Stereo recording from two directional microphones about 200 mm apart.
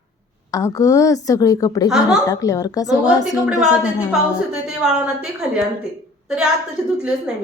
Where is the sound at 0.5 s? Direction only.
15° left (ahead or behind).